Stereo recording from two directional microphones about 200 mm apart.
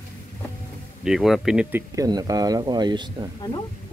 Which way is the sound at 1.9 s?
20° right (ahead or behind).